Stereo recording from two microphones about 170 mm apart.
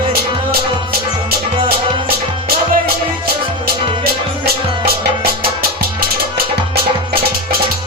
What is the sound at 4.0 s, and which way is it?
Music, 65° right (ahead or behind).